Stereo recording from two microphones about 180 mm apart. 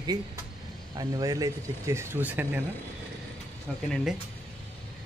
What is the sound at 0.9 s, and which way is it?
Speech, 20° right (ahead or behind).